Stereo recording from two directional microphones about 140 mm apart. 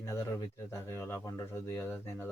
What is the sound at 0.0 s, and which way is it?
Speech, 20° left (ahead or behind).